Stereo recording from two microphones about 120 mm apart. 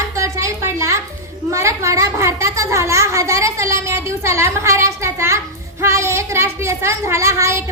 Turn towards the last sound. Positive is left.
turn(degrees=-25)  # may be behind; listen again after turning